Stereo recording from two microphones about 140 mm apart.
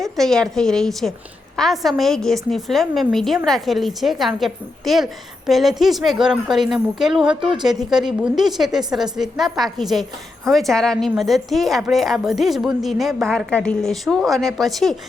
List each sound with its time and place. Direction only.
0.0 s speech: 5° left (ahead or behind)